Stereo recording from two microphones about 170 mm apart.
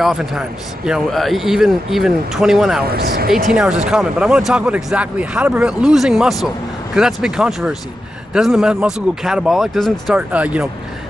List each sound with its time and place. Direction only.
0.0 s speech: centre (ahead or behind)
2.9 s speech: 65° right (ahead or behind)
3.5 s speech: 5° right (ahead or behind)